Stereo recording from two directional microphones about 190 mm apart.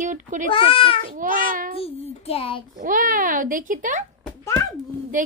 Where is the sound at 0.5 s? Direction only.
30° left (ahead or behind).